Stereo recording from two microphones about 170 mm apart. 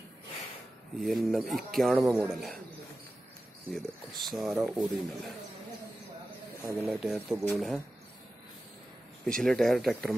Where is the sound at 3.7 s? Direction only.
Centre (ahead or behind).